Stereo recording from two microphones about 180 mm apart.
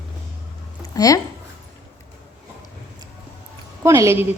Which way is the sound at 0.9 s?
20° left (ahead or behind).